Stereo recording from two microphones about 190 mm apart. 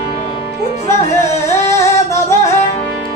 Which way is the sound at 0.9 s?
15° left (ahead or behind).